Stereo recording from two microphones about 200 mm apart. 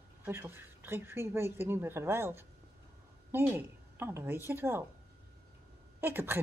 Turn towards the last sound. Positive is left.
turn(degrees=-10)  # may be behind; listen again after turning